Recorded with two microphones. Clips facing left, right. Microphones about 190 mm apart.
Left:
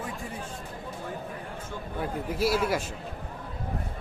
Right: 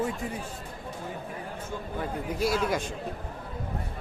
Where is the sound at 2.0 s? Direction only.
5° left (ahead or behind).